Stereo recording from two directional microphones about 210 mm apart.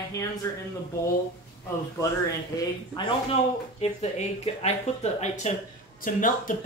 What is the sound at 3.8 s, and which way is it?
Speech, 30° left (ahead or behind).